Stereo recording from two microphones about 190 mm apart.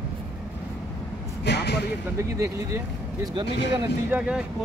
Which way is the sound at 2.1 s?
15° right (ahead or behind).